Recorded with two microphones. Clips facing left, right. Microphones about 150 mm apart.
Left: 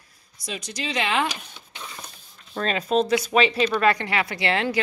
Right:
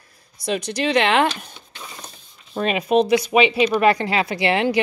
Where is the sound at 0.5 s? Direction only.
65° right (ahead or behind).